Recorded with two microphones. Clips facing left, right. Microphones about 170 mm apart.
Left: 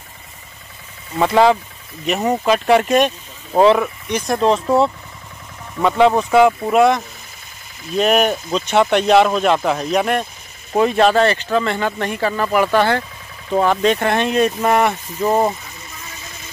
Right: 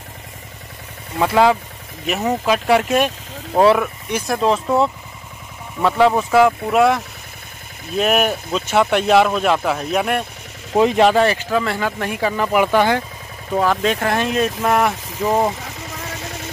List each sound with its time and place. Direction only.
1.2 s speech: centre (ahead or behind)
10.7 s speech: 20° right (ahead or behind)
13.6 s speech: centre (ahead or behind)
15.6 s vehicle: 85° right